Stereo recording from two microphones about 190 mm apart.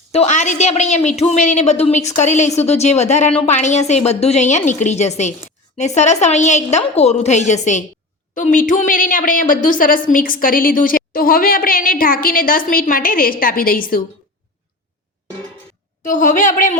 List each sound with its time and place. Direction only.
0.1 s a woman's voice: 35° left (ahead or behind)
16.0 s a woman's voice: 40° left (ahead or behind)